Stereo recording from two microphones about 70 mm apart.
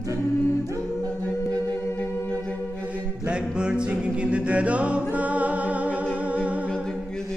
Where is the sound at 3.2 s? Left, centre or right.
Centre.